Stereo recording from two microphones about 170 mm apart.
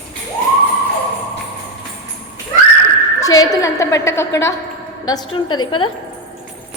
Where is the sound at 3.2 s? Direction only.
20° left (ahead or behind).